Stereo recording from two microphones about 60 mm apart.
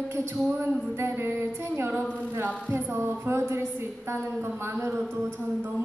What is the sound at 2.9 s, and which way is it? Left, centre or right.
A woman's voice, right.